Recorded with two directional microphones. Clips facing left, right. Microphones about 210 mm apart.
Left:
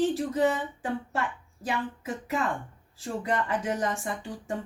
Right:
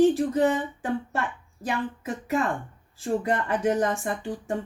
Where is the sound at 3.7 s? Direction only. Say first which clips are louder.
Right 5 dB; 50° right (ahead or behind).